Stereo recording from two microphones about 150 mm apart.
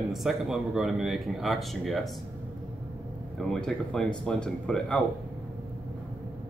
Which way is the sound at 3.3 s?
5° left (ahead or behind).